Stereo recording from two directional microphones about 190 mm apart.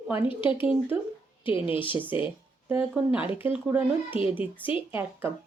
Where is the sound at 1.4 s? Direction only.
25° left (ahead or behind).